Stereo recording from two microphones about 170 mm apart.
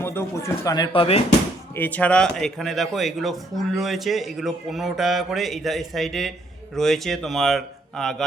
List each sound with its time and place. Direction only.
0.0 s speech: 15° left (ahead or behind)
1.7 s speech: 10° left (ahead or behind)